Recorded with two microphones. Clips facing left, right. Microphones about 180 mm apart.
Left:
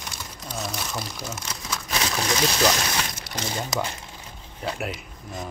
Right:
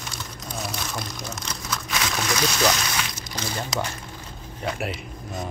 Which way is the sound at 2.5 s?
35° left (ahead or behind).